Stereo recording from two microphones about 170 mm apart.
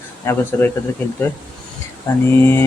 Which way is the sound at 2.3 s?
15° left (ahead or behind).